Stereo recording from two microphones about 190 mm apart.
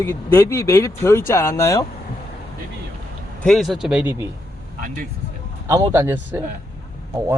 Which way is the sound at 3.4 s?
Centre (ahead or behind).